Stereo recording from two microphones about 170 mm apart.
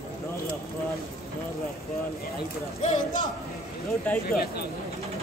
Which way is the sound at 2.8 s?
45° left (ahead or behind).